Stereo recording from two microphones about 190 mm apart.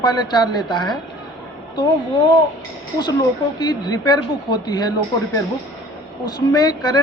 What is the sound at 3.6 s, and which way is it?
A woman's voice, 20° left (ahead or behind).